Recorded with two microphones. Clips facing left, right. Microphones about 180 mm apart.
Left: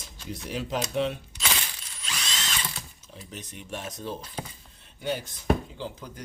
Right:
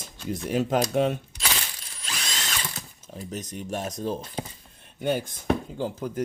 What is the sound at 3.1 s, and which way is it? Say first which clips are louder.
Speech: right 8 dB; 40° right (ahead or behind).